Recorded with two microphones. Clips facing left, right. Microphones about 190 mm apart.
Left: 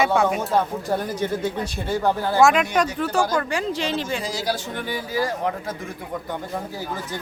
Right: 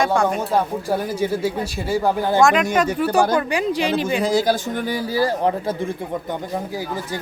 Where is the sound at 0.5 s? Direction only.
10° right (ahead or behind).